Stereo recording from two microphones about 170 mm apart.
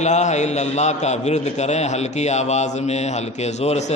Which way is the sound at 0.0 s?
45° left (ahead or behind).